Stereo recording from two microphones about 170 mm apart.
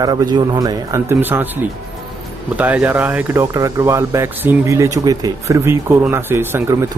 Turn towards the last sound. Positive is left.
turn(degrees=-15)  # may be behind; listen again after turning